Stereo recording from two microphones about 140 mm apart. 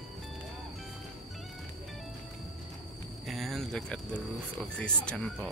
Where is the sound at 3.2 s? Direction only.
Centre (ahead or behind).